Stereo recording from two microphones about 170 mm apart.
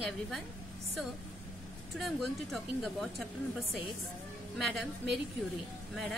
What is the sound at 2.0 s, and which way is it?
Speech, centre (ahead or behind).